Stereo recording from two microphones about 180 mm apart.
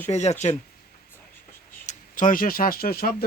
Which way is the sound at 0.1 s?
40° left (ahead or behind).